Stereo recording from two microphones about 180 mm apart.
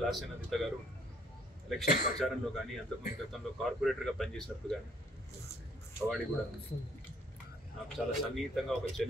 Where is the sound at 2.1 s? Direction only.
5° left (ahead or behind).